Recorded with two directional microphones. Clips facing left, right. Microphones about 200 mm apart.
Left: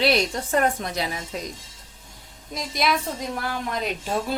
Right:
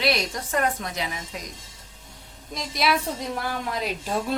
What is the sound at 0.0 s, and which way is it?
A woman's voice, 30° left (ahead or behind).